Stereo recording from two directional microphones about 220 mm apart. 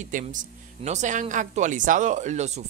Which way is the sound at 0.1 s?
35° right (ahead or behind).